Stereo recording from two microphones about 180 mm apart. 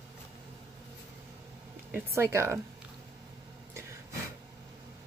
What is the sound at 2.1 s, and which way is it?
Speech, 15° right (ahead or behind).